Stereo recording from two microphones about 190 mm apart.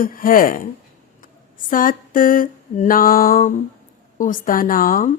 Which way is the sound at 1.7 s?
45° left (ahead or behind).